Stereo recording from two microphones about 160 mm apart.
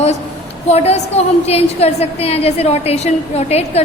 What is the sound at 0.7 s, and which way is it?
A woman's voice, 40° left (ahead or behind).